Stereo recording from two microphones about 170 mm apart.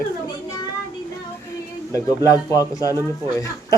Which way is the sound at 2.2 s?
20° left (ahead or behind).